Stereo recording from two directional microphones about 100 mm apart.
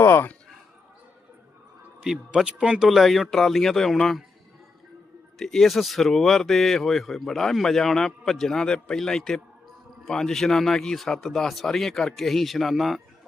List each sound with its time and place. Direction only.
0.0 s speech: 20° left (ahead or behind)
2.0 s speech: 5° right (ahead or behind)
5.4 s speech: 5° left (ahead or behind)